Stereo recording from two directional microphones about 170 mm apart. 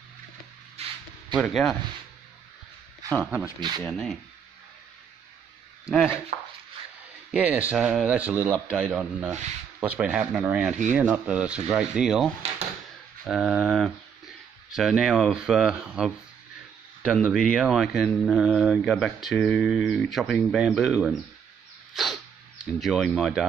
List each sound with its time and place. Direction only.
0.8 s a sound: 35° right (ahead or behind)
1.3 s speech: centre (ahead or behind)
3.2 s speech: 10° right (ahead or behind)
3.8 s speech: 5° left (ahead or behind)
5.9 s speech: 5° right (ahead or behind)
7.2 s speech: 5° right (ahead or behind)
21.9 s dog: centre (ahead or behind)
22.8 s speech: centre (ahead or behind)